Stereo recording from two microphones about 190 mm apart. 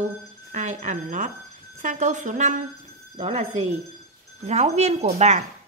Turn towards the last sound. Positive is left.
turn(degrees=-35)  # may be behind; listen again after turning